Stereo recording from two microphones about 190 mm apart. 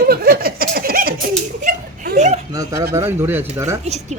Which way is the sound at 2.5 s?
15° right (ahead or behind).